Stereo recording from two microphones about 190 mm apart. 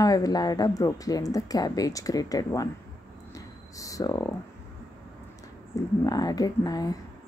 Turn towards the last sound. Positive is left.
turn(degrees=20)  # may be behind; listen again after turning